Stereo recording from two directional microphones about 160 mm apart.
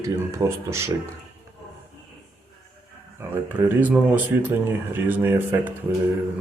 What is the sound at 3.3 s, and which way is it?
Speech, 10° right (ahead or behind).